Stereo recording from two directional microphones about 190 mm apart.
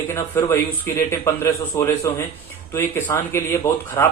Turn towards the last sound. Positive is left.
turn(degrees=10)  # may be behind; listen again after turning